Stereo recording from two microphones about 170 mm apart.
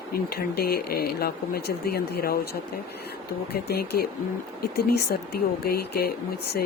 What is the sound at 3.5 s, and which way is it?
Speech, 65° left (ahead or behind).